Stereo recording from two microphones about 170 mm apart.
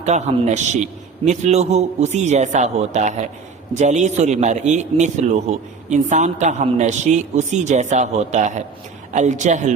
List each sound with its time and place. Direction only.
0.0 s a man's voice: 40° right (ahead or behind)